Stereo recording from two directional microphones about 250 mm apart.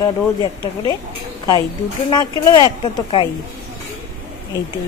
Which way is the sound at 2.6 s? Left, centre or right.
Centre.